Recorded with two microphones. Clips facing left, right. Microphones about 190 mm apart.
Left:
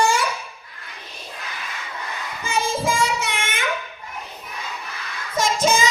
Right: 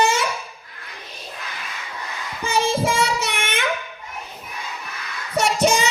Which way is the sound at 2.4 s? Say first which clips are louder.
Right 3 dB; 70° right (ahead or behind).